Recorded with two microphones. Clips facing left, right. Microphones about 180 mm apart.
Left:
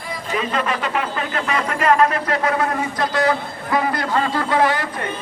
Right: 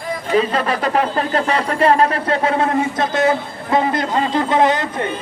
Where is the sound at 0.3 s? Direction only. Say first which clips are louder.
Right 5 dB; 35° right (ahead or behind).